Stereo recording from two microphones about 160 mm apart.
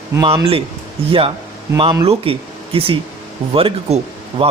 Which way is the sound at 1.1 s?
35° right (ahead or behind).